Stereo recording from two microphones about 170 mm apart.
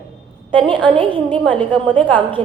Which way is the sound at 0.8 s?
30° right (ahead or behind).